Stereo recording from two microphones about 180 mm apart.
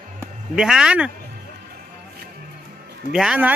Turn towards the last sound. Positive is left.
turn(degrees=-5)  # may be behind; listen again after turning